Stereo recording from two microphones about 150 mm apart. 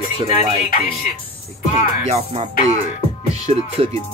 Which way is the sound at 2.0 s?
50° right (ahead or behind).